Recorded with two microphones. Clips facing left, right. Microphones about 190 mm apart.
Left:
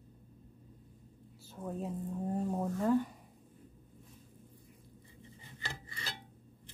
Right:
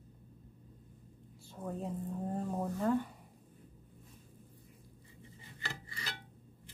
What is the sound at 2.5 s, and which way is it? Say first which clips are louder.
Speech: left 1 dB; centre (ahead or behind).